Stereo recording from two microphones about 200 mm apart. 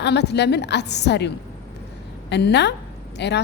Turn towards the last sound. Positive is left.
turn(degrees=60)  # may be behind; listen again after turning